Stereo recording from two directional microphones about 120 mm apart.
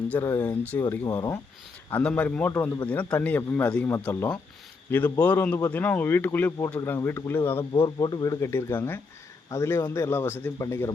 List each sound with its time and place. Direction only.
0.1 s speech: 20° left (ahead or behind)
1.0 s speech: 30° left (ahead or behind)
1.9 s speech: 10° left (ahead or behind)
5.5 s a man's voice: 25° left (ahead or behind)
7.7 s a man's voice: 35° left (ahead or behind)